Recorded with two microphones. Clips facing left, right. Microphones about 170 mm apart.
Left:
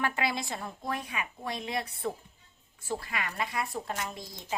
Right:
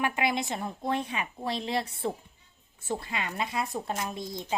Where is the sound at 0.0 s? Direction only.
15° right (ahead or behind).